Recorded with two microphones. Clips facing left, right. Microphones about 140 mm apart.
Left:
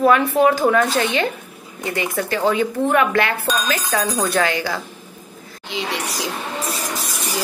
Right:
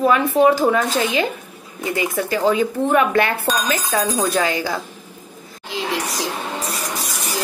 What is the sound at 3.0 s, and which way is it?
Speech, 25° right (ahead or behind).